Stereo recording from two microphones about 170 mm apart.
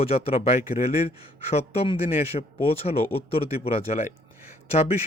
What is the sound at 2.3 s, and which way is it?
Speech, 35° left (ahead or behind).